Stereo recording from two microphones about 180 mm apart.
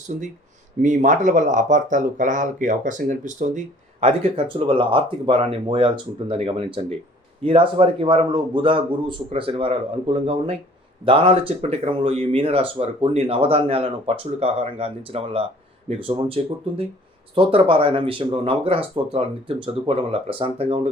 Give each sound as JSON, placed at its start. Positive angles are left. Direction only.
{"t": 0.8, "sound": "speech", "side_deg": -45}
{"t": 4.0, "sound": "a man's voice", "side_deg": -35}